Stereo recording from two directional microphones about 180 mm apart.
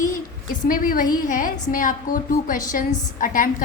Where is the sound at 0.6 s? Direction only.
50° left (ahead or behind).